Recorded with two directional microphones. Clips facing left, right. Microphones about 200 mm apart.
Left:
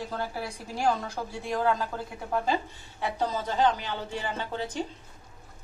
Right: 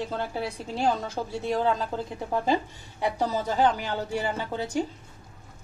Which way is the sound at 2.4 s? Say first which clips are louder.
Right 3 dB; 15° right (ahead or behind).